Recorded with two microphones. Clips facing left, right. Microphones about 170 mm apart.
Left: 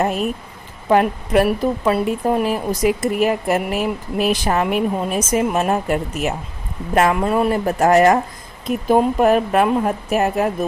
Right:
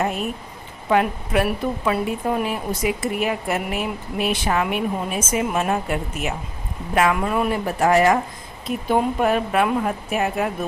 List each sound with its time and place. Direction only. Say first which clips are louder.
0.9 s a woman's voice: left 4 dB; 40° left (ahead or behind)